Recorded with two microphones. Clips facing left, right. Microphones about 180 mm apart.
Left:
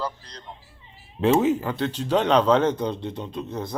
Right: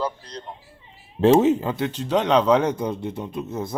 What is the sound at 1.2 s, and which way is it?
Speech, 30° right (ahead or behind).